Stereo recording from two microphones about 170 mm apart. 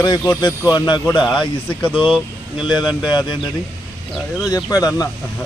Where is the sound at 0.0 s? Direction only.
25° left (ahead or behind).